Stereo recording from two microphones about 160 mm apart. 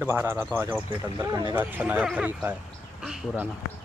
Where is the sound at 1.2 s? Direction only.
25° right (ahead or behind).